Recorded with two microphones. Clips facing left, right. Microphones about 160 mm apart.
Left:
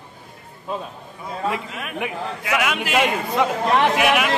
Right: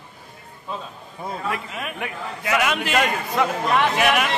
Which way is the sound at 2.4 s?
5° left (ahead or behind).